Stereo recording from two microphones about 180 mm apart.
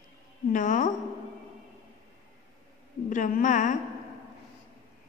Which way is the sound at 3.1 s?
45° left (ahead or behind).